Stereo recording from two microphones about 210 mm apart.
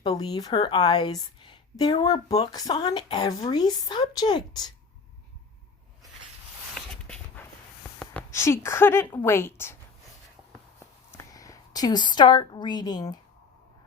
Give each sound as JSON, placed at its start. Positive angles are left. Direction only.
{"t": 0.0, "sound": "speech", "side_deg": 20}
{"t": 6.7, "sound": "a sound", "side_deg": 5}
{"t": 9.1, "sound": "a woman's voice", "side_deg": 10}
{"t": 11.1, "sound": "a woman's voice", "side_deg": 15}